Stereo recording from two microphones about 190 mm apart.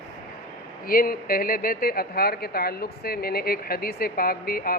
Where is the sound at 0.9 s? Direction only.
50° left (ahead or behind).